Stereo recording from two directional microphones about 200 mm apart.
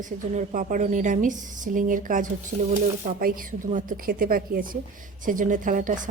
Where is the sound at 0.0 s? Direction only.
40° right (ahead or behind).